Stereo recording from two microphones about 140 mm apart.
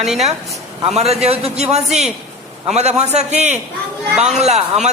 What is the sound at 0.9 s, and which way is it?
Speech, 50° right (ahead or behind).